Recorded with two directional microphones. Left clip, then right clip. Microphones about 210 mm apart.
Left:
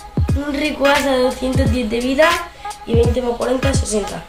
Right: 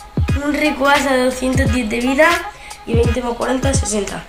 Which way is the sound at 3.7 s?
20° left (ahead or behind).